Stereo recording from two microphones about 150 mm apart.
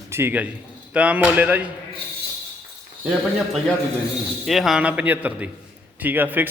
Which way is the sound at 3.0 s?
5° right (ahead or behind).